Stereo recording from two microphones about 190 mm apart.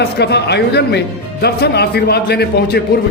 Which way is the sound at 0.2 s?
60° left (ahead or behind).